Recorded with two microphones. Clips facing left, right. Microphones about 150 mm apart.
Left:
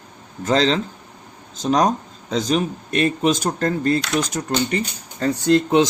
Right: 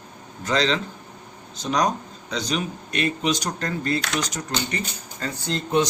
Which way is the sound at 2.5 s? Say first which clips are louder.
Left 6 dB; 45° left (ahead or behind).